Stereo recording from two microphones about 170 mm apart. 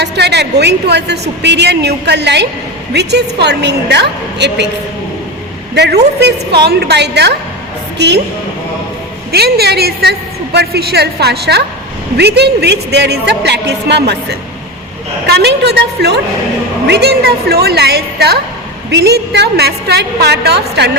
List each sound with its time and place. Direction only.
0.0 s a woman's voice: 75° right (ahead or behind)
2.9 s a woman's voice: 80° right
5.7 s a woman's voice: 80° right
9.3 s a woman's voice: 70° right (ahead or behind)